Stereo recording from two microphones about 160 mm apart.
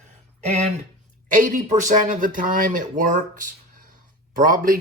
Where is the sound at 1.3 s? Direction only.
55° right (ahead or behind).